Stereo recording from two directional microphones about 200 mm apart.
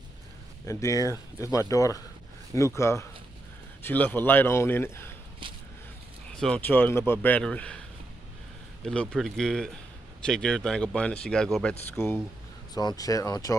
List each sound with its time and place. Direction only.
0.7 s a man's voice: 15° left (ahead or behind)
5.4 s a sound: 25° right (ahead or behind)
6.3 s a man's voice: 5° left (ahead or behind)
8.8 s a man's voice: 5° left (ahead or behind)